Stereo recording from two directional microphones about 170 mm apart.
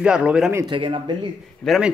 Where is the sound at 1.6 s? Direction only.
Centre (ahead or behind).